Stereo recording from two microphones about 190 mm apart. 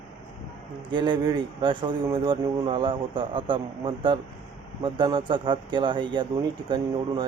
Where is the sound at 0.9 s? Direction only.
25° right (ahead or behind).